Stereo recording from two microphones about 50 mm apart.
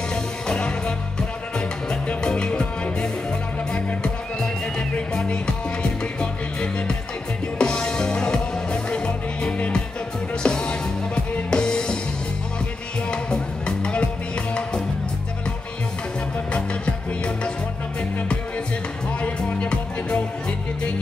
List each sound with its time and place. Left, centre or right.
0.1 s music: centre
2.2 s music: centre
7.5 s music: centre
13.1 s music: left
16.5 s music: left
19.2 s music: left